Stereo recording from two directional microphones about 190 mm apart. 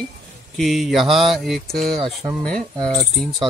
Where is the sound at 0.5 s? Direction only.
Centre (ahead or behind).